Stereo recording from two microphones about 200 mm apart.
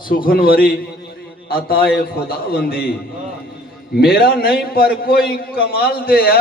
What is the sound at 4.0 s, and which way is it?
A man's voice, 50° left (ahead or behind).